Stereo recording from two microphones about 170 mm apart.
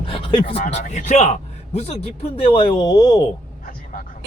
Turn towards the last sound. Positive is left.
turn(degrees=20)  # may be behind; listen again after turning